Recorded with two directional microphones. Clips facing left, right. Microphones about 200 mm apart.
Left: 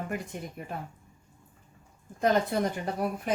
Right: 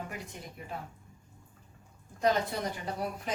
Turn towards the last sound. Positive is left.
turn(degrees=50)  # may be behind; listen again after turning